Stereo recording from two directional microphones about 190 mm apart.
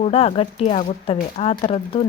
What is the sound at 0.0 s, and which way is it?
Speech, 30° left (ahead or behind).